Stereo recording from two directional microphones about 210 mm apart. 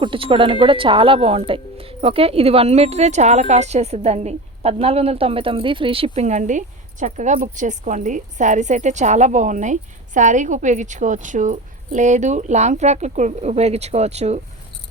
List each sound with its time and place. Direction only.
0.0 s speech: 25° right (ahead or behind)